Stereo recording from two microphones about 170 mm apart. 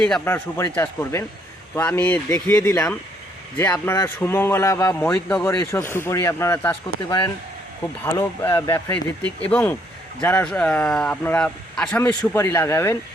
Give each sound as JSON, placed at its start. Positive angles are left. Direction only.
{"t": 0.0, "sound": "speech", "side_deg": 5}
{"t": 8.0, "sound": "speech", "side_deg": 15}